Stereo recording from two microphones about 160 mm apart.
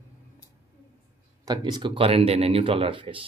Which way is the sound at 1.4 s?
25° right (ahead or behind).